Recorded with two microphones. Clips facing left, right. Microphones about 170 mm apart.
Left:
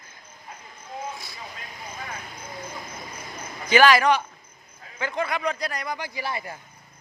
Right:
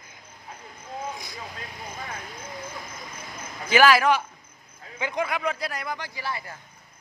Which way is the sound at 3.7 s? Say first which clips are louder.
Left 1 dB; 5° right (ahead or behind).